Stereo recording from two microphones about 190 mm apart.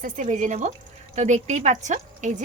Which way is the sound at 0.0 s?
40° right (ahead or behind).